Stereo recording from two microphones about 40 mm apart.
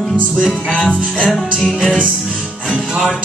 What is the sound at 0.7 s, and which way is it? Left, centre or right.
Music, left.